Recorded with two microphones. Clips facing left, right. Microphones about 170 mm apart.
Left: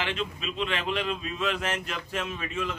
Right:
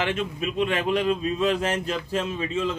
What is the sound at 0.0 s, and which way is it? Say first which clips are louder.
Speech: right 5 dB; 45° right (ahead or behind).